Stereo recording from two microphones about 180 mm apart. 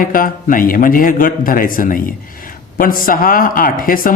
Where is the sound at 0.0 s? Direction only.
50° left (ahead or behind).